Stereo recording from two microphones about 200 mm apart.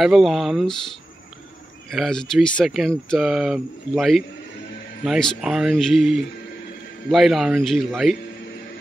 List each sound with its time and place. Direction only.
0.0 s speech: centre (ahead or behind)
1.9 s speech: centre (ahead or behind)